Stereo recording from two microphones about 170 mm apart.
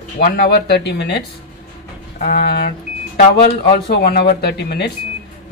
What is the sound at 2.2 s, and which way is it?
A woman's voice, 55° left (ahead or behind).